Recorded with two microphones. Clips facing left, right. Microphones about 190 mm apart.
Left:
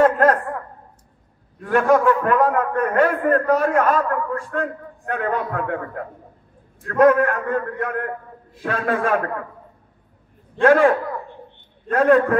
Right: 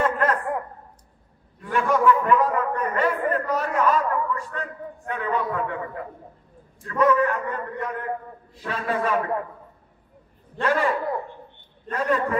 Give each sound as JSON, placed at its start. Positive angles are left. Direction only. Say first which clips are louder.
{"t": 0.0, "sound": "a sound", "louder": "left 7 dB", "side_deg": 55}
{"t": 1.6, "sound": "a man's voice", "louder": "left 5 dB", "side_deg": 45}
{"t": 6.9, "sound": "a man's voice", "louder": "left 5 dB", "side_deg": 60}
{"t": 10.6, "sound": "a man's voice", "louder": "left 8 dB", "side_deg": 55}